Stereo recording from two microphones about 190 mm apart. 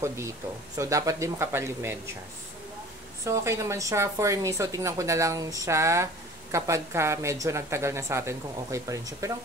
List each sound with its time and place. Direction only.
0.0 s speech: 15° right (ahead or behind)
3.3 s speech: 15° right (ahead or behind)